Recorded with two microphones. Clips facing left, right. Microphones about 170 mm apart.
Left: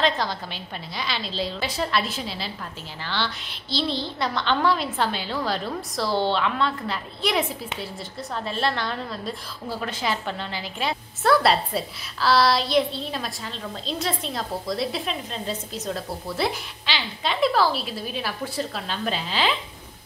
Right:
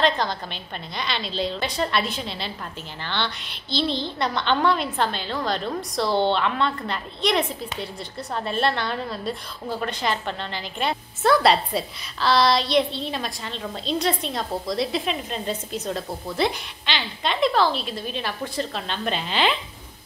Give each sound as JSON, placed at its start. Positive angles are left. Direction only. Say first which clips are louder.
{"t": 0.0, "sound": "a woman's voice", "louder": "right 2 dB", "side_deg": 5}